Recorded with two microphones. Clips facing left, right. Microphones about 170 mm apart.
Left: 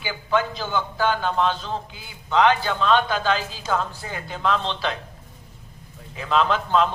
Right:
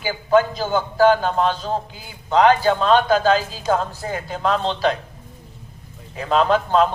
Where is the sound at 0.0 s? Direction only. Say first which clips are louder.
Right 7 dB; 40° right (ahead or behind).